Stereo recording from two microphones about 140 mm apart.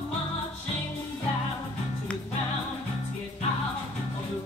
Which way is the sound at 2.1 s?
10° left (ahead or behind).